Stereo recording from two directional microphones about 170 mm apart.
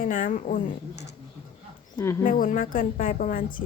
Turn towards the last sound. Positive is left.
turn(degrees=55)  # may be behind; listen again after turning